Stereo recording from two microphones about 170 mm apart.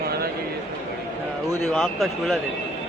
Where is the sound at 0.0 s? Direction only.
65° right (ahead or behind).